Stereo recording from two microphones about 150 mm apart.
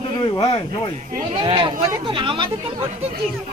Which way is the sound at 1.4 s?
35° right (ahead or behind).